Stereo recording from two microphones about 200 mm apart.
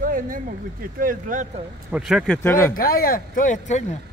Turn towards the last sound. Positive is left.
turn(degrees=40)  # may be behind; listen again after turning